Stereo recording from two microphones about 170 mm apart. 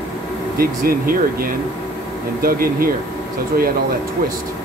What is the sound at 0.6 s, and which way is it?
Speech, 60° right (ahead or behind).